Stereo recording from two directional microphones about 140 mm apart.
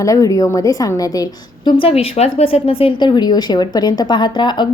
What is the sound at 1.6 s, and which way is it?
A woman's voice, 40° left (ahead or behind).